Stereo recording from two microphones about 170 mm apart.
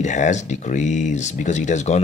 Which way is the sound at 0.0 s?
45° left (ahead or behind).